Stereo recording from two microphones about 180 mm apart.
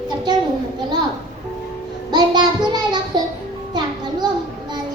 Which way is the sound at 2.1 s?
25° right (ahead or behind).